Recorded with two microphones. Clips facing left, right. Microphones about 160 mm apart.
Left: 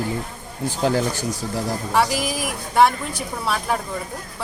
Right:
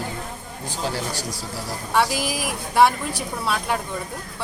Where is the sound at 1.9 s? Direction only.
Centre (ahead or behind).